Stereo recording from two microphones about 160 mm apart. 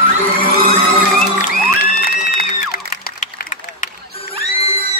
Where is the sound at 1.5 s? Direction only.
70° left (ahead or behind).